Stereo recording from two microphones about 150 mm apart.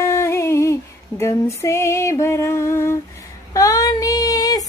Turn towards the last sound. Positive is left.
turn(degrees=25)  # may be behind; listen again after turning